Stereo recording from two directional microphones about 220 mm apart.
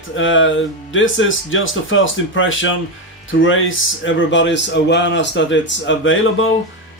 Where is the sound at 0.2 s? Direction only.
60° left (ahead or behind).